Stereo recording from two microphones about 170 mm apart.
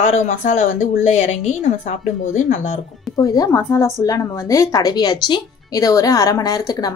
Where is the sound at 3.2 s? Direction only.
20° left (ahead or behind).